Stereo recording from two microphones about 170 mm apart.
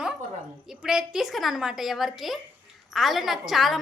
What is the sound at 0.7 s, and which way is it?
A woman's voice, 5° right (ahead or behind).